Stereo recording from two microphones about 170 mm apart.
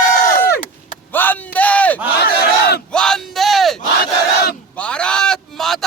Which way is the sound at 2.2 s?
75° left (ahead or behind).